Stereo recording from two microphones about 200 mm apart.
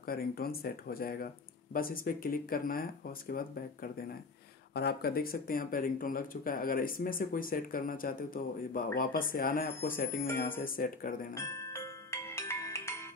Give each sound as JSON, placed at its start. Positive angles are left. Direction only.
{"t": 0.0, "sound": "speech", "side_deg": 45}
{"t": 11.3, "sound": "music", "side_deg": 15}